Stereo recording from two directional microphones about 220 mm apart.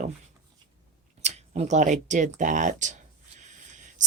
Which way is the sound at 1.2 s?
30° right (ahead or behind).